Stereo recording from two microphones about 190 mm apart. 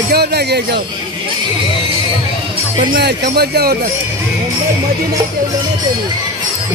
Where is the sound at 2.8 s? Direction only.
55° right (ahead or behind).